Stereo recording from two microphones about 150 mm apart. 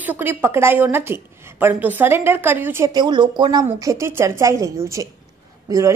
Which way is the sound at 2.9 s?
30° right (ahead or behind).